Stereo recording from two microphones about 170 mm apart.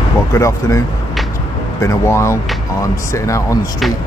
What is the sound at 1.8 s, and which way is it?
Speech, 15° left (ahead or behind).